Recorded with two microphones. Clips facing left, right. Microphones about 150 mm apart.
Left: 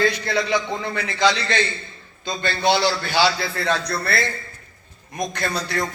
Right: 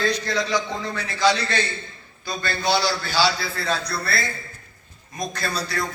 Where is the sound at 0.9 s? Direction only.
80° left.